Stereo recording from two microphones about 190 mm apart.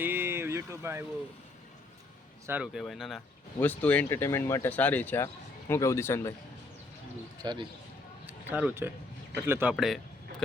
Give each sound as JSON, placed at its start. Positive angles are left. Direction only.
{"t": 0.0, "sound": "a sound", "side_deg": -10}
{"t": 2.5, "sound": "speech", "side_deg": -5}
{"t": 7.4, "sound": "speech", "side_deg": -20}
{"t": 8.3, "sound": "speech", "side_deg": -10}
{"t": 9.7, "sound": "speech", "side_deg": 0}